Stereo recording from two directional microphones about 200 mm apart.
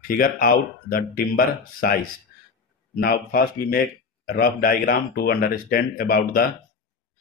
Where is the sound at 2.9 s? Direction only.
50° left (ahead or behind).